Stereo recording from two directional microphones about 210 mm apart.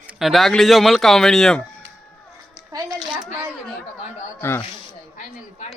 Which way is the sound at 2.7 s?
20° right (ahead or behind).